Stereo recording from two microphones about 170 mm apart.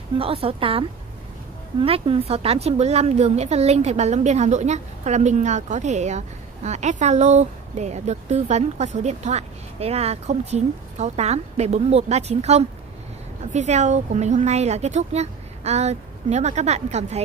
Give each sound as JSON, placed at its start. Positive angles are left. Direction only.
{"t": 0.2, "sound": "a woman's voice", "side_deg": -35}